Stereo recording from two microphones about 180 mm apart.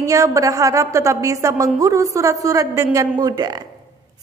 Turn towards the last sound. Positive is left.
turn(degrees=-20)  # may be behind; listen again after turning